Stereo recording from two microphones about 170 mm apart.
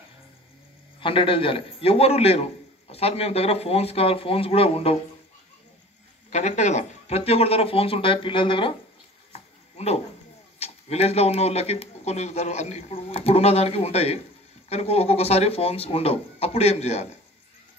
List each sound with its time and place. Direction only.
1.0 s a man's voice: 30° left (ahead or behind)
6.3 s a man's voice: 40° left (ahead or behind)
9.3 s a sound: 40° left (ahead or behind)
10.6 s a man's voice: 35° left (ahead or behind)